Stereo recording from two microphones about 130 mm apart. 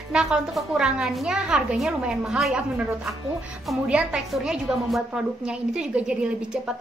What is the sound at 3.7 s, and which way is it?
A woman's voice, 10° right (ahead or behind).